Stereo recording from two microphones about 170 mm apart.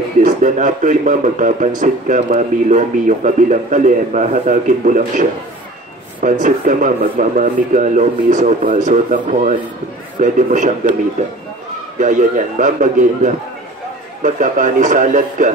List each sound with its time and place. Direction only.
0.2 s speech: 50° right (ahead or behind)
6.4 s speech: 50° right (ahead or behind)
12.0 s speech: 50° right (ahead or behind)